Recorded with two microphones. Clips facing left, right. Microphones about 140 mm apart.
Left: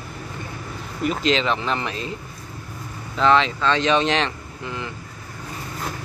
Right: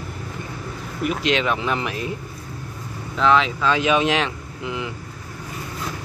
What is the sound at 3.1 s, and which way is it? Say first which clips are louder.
Speech: even; centre (ahead or behind).